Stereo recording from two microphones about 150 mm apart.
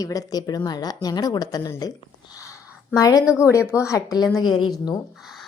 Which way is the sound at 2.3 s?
20° left (ahead or behind).